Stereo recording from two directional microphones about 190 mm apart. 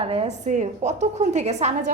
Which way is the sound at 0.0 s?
30° right (ahead or behind).